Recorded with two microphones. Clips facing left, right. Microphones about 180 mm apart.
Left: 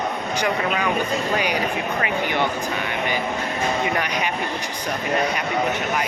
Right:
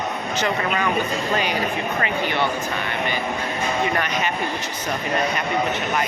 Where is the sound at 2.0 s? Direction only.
10° left (ahead or behind).